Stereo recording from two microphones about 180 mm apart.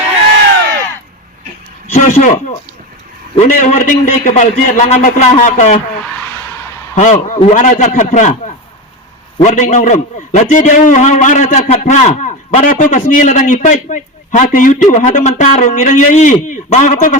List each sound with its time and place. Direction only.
1.9 s a man's voice: 40° left (ahead or behind)
6.9 s a man's voice: 45° left (ahead or behind)